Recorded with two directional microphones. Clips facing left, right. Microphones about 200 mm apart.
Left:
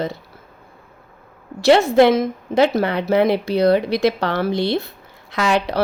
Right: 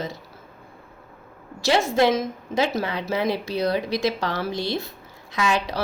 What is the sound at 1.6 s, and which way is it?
A woman's voice, 60° left (ahead or behind).